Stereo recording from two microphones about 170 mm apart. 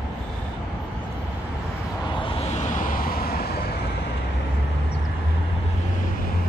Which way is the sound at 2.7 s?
55° left (ahead or behind).